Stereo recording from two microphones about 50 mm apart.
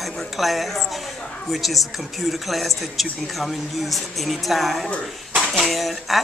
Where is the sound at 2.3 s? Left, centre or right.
Centre.